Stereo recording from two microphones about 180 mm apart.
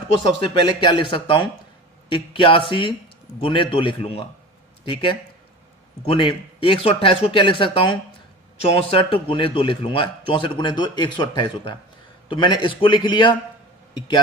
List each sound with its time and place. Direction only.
0.4 s a man's voice: 30° left (ahead or behind)